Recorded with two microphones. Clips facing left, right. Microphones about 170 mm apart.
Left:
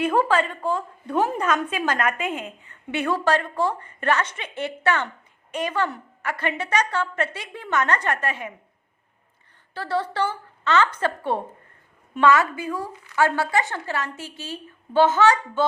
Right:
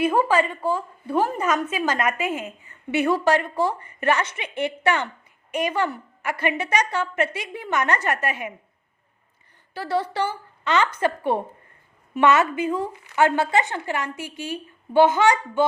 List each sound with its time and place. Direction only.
0.0 s a woman's voice: 10° right (ahead or behind)
9.7 s a woman's voice: 10° right (ahead or behind)